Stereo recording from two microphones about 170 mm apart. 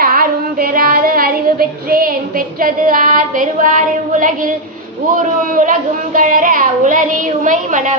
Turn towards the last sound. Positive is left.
turn(degrees=-50)  # may be behind; listen again after turning